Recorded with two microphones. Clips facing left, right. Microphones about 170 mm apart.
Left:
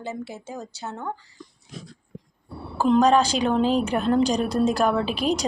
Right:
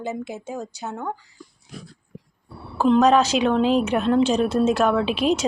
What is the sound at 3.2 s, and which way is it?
Speech, 35° left (ahead or behind).